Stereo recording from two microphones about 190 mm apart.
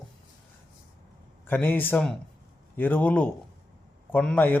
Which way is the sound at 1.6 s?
10° left (ahead or behind).